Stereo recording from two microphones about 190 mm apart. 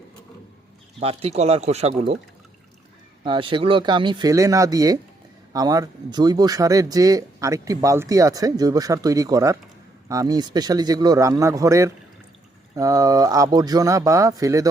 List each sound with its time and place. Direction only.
0.9 s speech: 30° right (ahead or behind)
3.2 s speech: 25° right (ahead or behind)